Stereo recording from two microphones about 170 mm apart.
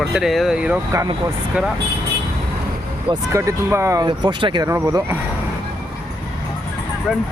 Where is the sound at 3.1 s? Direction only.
20° right (ahead or behind).